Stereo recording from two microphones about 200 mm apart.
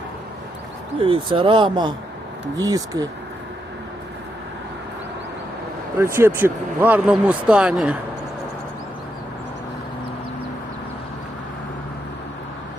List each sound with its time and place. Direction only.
0.9 s speech: 25° right (ahead or behind)
6.0 s speech: 10° right (ahead or behind)